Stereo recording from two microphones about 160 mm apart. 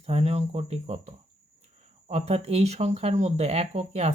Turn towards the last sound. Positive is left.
turn(degrees=-40)  # may be behind; listen again after turning